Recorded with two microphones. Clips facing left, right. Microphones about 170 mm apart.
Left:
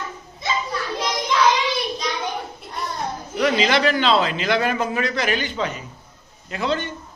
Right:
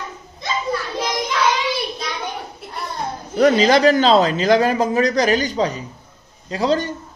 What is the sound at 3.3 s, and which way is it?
A man's voice, 40° right (ahead or behind).